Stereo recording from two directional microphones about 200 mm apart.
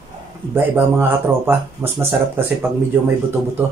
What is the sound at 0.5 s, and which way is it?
Speech, 10° right (ahead or behind).